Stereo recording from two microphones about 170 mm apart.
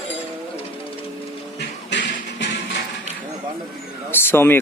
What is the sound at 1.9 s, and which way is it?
Music, 90° left.